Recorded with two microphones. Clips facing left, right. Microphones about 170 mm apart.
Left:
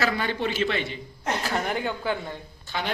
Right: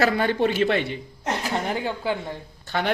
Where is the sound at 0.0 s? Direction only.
50° right (ahead or behind).